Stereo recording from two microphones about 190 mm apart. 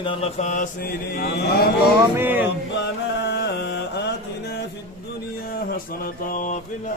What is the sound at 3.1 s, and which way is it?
Mantra, 65° left (ahead or behind).